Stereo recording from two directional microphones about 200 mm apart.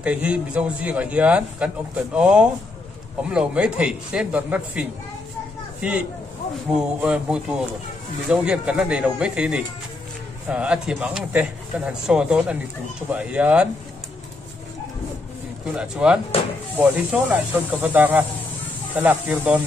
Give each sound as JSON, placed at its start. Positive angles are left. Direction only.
{"t": 0.0, "sound": "a man's voice", "side_deg": -5}
{"t": 15.7, "sound": "a man's voice", "side_deg": -5}